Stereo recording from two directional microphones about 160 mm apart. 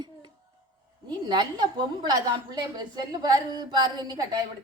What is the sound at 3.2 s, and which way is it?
A woman's voice, 25° right (ahead or behind).